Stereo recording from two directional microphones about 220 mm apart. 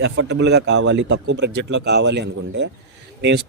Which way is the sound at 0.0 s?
50° right (ahead or behind).